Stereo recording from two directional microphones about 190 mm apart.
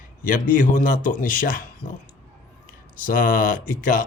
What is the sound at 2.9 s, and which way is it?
Speech, 45° left (ahead or behind).